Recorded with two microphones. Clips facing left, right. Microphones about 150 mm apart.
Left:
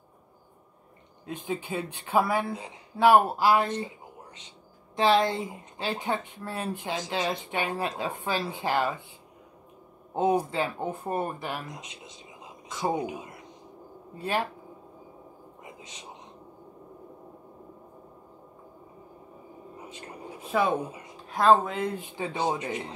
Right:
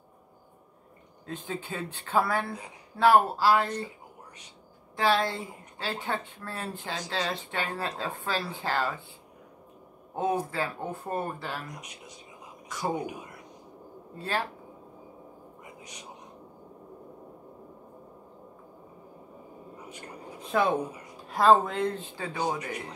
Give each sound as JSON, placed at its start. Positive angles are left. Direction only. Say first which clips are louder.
{"t": 1.2, "sound": "speech", "louder": "left 3 dB", "side_deg": 15}
{"t": 4.9, "sound": "speech", "louder": "left 3 dB", "side_deg": 20}
{"t": 10.1, "sound": "speech", "louder": "left 4 dB", "side_deg": 20}
{"t": 15.6, "sound": "a sound", "louder": "left 2 dB", "side_deg": 25}
{"t": 20.5, "sound": "speech", "louder": "even", "side_deg": 5}